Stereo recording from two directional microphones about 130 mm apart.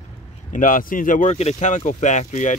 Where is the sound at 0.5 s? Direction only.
85° left.